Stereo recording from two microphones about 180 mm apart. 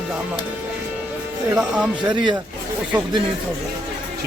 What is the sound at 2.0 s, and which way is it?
Speech, 25° right (ahead or behind).